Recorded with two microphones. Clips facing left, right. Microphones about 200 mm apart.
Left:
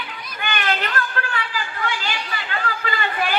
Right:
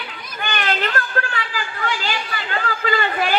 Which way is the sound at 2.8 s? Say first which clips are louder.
Right 6 dB; 45° right (ahead or behind).